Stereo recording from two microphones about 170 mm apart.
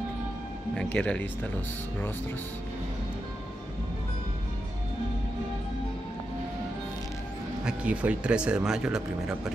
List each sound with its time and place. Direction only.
0.7 s speech: 10° left (ahead or behind)
7.6 s speech: 5° right (ahead or behind)